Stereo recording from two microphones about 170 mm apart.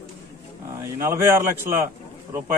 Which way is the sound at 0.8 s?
15° right (ahead or behind).